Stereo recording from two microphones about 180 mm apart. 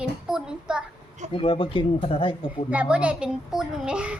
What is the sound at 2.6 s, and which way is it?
A child's voice, 5° right (ahead or behind).